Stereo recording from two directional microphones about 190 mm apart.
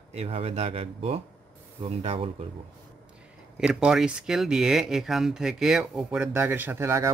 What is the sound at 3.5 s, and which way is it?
Speech, 5° right (ahead or behind).